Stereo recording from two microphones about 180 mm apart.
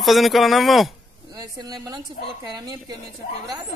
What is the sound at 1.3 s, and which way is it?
A woman's voice, 20° right (ahead or behind).